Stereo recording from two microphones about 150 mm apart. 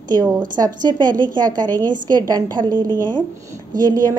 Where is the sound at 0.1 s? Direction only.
30° right (ahead or behind).